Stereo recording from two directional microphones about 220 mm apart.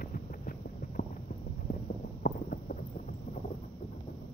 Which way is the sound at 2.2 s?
40° left (ahead or behind).